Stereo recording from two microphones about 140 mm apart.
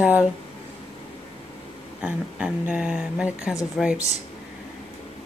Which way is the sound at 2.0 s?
5° right (ahead or behind).